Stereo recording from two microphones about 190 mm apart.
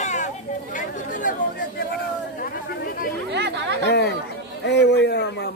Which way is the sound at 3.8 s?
60° left (ahead or behind).